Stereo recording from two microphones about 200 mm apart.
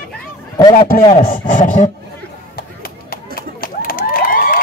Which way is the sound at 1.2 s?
45° left (ahead or behind).